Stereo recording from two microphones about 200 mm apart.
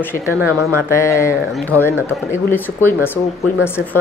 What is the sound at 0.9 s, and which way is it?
Speech, 15° left (ahead or behind).